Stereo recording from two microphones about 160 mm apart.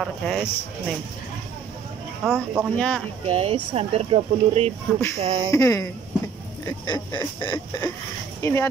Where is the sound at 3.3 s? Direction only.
35° right (ahead or behind).